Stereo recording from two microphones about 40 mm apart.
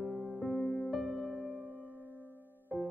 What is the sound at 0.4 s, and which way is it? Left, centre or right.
Music, left.